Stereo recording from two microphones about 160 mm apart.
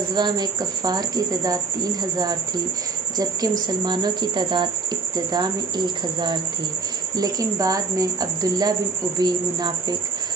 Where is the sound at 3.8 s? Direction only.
30° right (ahead or behind).